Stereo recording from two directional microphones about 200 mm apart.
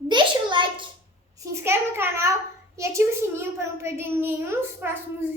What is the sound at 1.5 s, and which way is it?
A child's voice, 10° right (ahead or behind).